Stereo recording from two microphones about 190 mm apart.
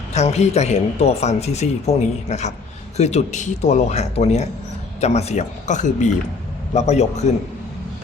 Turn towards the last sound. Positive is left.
turn(degrees=35)  # may be behind; listen again after turning